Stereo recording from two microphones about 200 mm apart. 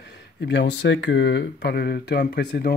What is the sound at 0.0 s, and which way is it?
Speech, 60° left (ahead or behind).